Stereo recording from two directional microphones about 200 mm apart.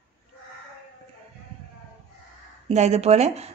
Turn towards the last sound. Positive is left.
turn(degrees=-35)  # may be behind; listen again after turning